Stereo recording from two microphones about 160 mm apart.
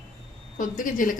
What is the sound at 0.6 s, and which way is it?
Speech, 55° left (ahead or behind).